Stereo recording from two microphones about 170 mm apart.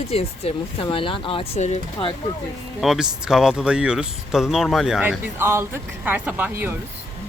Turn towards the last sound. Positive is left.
turn(degrees=-10)  # may be behind; listen again after turning